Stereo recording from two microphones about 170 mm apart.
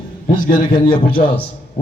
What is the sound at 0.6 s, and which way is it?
Speech, 30° left (ahead or behind).